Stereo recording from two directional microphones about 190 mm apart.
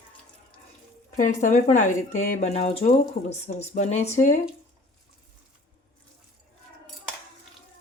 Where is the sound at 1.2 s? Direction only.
40° left (ahead or behind).